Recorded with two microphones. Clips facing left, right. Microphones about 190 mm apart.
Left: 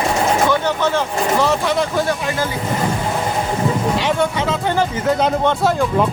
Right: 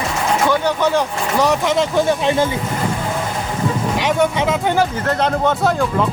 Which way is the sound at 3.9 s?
15° right (ahead or behind).